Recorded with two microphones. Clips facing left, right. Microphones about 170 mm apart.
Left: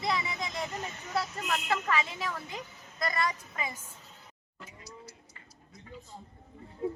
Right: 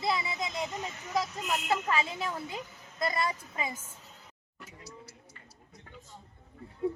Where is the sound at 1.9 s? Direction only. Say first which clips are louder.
Right 1 dB; 30° right (ahead or behind).